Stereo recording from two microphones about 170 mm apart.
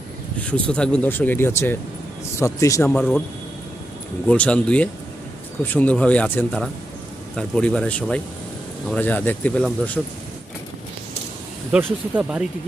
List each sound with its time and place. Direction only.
0.5 s speech: 5° left (ahead or behind)
2.9 s speech: centre (ahead or behind)
4.3 s speech: 5° left (ahead or behind)
10.0 s speech: centre (ahead or behind)
11.7 s speech: 5° right (ahead or behind)